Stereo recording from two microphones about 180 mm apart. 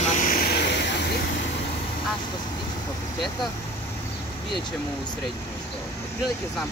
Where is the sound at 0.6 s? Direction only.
80° left.